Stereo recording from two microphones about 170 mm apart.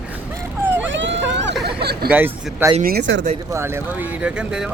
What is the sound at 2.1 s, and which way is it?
Speech, 10° right (ahead or behind).